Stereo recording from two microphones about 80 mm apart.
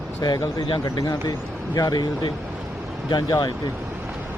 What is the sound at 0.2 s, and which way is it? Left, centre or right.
Speech, left.